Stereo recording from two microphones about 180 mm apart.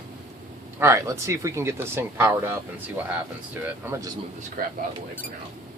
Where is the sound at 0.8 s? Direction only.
15° right (ahead or behind).